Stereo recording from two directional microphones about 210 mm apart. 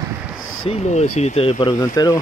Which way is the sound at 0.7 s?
30° left (ahead or behind).